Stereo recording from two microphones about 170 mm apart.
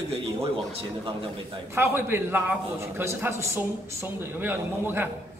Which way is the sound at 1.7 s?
15° right (ahead or behind).